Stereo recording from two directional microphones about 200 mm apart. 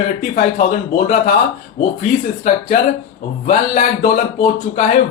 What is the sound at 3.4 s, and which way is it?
Speech, 40° left (ahead or behind).